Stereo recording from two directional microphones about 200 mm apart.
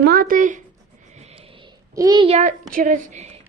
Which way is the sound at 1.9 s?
20° right (ahead or behind).